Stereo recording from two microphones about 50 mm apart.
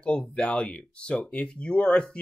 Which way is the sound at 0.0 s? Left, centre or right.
Left.